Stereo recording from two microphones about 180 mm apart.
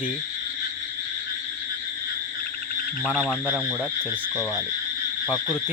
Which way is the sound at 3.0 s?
10° left (ahead or behind).